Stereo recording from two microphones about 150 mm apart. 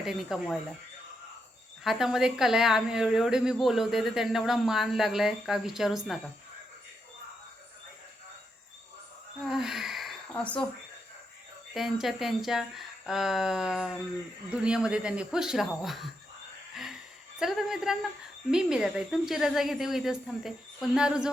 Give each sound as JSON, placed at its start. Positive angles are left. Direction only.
{"t": 0.0, "sound": "speech", "side_deg": -5}
{"t": 1.8, "sound": "speech", "side_deg": 0}
{"t": 9.4, "sound": "a sound", "side_deg": 0}
{"t": 11.7, "sound": "speech", "side_deg": 0}
{"t": 17.4, "sound": "speech", "side_deg": 0}